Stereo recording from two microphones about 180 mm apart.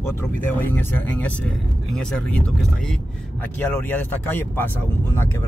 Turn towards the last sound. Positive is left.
turn(degrees=10)  # may be behind; listen again after turning